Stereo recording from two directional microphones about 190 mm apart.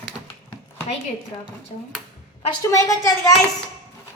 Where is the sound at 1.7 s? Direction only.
35° left (ahead or behind).